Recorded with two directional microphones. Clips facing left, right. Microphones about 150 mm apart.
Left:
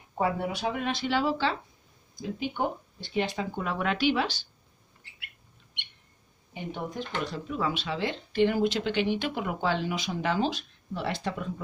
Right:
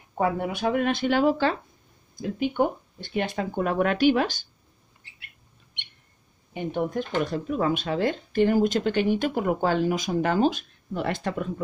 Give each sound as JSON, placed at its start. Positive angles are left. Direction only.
{"t": 0.2, "sound": "speech", "side_deg": -55}
{"t": 6.5, "sound": "speech", "side_deg": -55}